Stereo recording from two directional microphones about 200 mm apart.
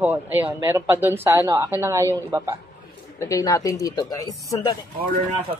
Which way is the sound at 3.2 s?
15° left (ahead or behind).